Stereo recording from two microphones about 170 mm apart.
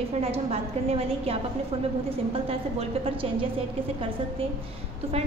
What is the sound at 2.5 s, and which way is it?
Speech, 35° right (ahead or behind).